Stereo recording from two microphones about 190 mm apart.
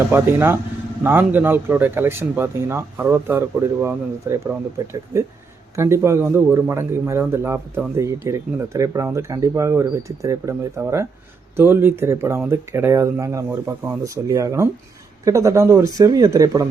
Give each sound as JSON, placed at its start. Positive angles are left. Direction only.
{"t": 0.1, "sound": "speech", "side_deg": -10}